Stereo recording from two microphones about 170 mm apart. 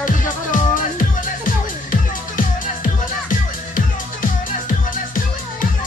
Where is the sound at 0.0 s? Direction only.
50° left (ahead or behind).